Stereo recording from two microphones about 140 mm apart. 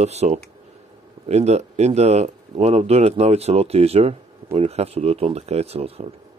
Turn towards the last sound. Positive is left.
turn(degrees=-45)  # may be behind; listen again after turning